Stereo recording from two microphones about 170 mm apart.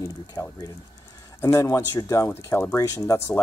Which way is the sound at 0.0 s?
20° left (ahead or behind).